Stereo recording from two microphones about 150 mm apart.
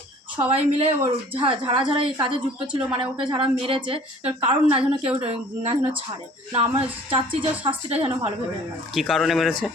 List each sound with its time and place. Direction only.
0.4 s a woman's voice: 40° right (ahead or behind)
9.0 s speech: centre (ahead or behind)